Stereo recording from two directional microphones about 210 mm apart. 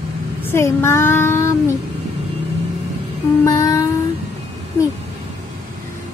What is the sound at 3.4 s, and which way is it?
Music, 15° left (ahead or behind).